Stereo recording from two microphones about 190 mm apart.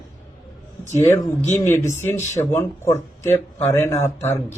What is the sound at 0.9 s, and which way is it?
Speech, 15° left (ahead or behind).